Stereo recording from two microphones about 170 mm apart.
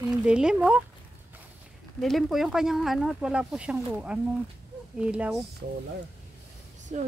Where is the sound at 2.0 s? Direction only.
Centre (ahead or behind).